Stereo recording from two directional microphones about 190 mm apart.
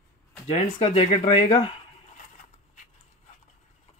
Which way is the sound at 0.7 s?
30° left (ahead or behind).